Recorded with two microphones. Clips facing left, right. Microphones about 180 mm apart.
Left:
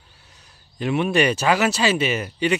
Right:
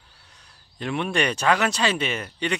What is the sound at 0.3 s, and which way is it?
Speech, 5° left (ahead or behind).